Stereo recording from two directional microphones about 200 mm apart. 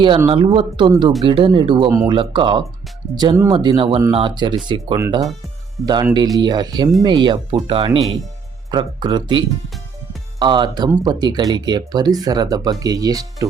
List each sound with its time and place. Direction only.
0.3 s speech: 25° right (ahead or behind)
1.9 s speech: 10° right (ahead or behind)
2.1 s speech: 25° right (ahead or behind)
10.4 s speech: 20° right (ahead or behind)